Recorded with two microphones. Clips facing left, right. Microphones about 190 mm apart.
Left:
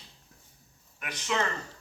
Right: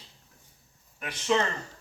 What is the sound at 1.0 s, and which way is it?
Speech, 30° right (ahead or behind).